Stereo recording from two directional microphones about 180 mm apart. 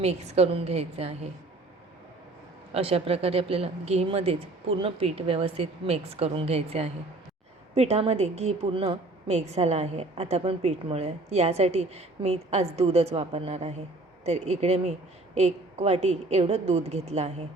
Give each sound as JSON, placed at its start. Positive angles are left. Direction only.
{"t": 0.0, "sound": "a woman's voice", "side_deg": -35}
{"t": 2.7, "sound": "a woman's voice", "side_deg": -35}